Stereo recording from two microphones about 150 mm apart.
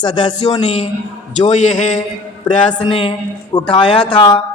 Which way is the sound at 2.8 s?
40° left (ahead or behind).